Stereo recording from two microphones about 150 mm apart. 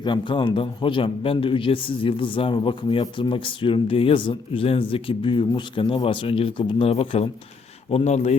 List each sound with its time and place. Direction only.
0.0 s a man's voice: 30° left (ahead or behind); by 8.4 s 50° left (ahead or behind)